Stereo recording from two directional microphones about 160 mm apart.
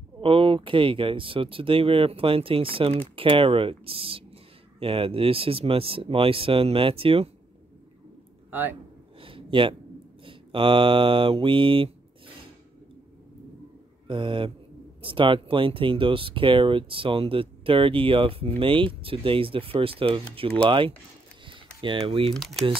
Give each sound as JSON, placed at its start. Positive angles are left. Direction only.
{"t": 0.2, "sound": "speech", "side_deg": -35}
{"t": 8.5, "sound": "speech", "side_deg": -10}
{"t": 9.2, "sound": "a sound", "side_deg": -35}
{"t": 10.2, "sound": "mantra", "side_deg": -35}
{"t": 14.0, "sound": "speech", "side_deg": -30}
{"t": 21.5, "sound": "typing", "side_deg": -30}
{"t": 22.3, "sound": "speech", "side_deg": 0}